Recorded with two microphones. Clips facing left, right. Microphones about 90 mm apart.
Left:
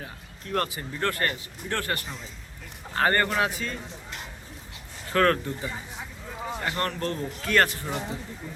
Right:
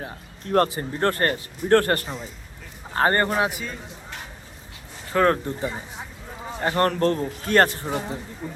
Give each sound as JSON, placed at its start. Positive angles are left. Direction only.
{"t": 0.0, "sound": "a man's voice", "side_deg": -40}
{"t": 3.5, "sound": "a man's voice", "side_deg": -10}
{"t": 5.1, "sound": "a man's voice", "side_deg": -20}
{"t": 5.5, "sound": "speech", "side_deg": -30}